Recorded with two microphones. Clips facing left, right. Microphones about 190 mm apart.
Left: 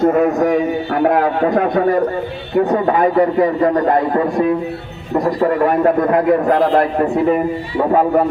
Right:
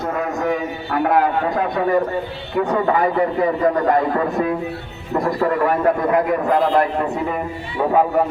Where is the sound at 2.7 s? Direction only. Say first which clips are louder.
Left 2 dB; 40° left (ahead or behind).